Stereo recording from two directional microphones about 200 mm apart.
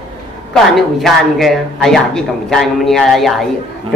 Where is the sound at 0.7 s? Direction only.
Centre (ahead or behind).